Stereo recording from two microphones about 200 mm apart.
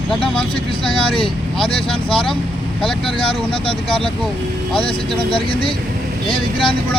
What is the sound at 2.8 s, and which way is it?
Speech, centre (ahead or behind).